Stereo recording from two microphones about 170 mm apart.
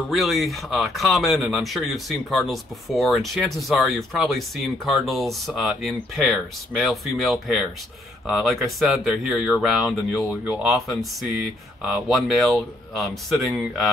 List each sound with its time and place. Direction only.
0.1 s speech: centre (ahead or behind)